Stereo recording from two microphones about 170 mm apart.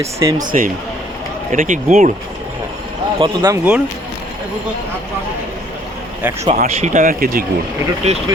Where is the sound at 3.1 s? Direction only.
25° right (ahead or behind).